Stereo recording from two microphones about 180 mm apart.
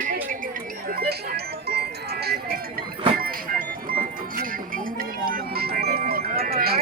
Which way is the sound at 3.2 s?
55° right (ahead or behind).